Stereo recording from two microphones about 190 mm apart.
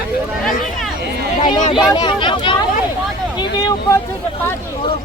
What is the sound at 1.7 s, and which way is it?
Speech, 25° left (ahead or behind).